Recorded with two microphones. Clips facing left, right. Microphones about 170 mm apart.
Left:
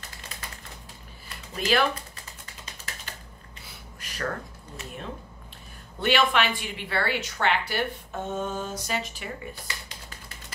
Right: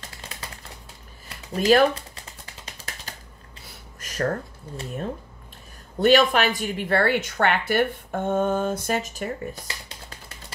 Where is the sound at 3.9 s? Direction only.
45° right (ahead or behind).